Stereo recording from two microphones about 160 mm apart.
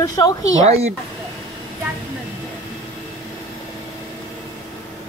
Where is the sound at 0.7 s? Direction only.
40° right (ahead or behind).